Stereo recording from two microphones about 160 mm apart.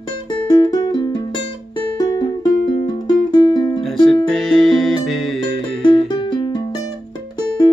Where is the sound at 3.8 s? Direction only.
Centre (ahead or behind).